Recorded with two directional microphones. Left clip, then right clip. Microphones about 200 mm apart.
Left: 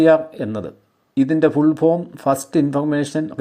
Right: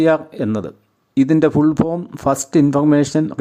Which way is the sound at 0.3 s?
20° right (ahead or behind).